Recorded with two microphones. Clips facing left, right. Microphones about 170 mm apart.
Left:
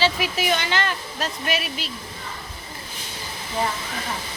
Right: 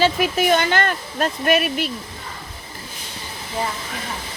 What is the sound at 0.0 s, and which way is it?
Speech, 50° right (ahead or behind).